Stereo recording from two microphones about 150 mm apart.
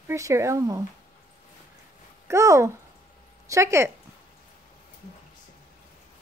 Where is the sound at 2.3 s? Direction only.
20° right (ahead or behind).